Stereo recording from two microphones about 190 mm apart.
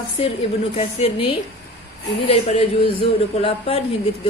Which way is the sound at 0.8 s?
30° left (ahead or behind).